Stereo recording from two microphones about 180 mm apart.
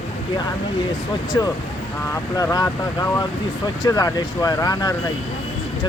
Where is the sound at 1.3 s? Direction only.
20° left (ahead or behind).